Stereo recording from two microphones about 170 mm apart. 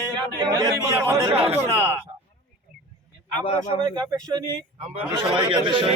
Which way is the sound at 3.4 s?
30° left (ahead or behind).